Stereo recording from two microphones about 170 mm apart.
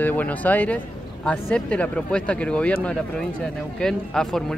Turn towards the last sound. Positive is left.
turn(degrees=0)  # may be behind; listen again after turning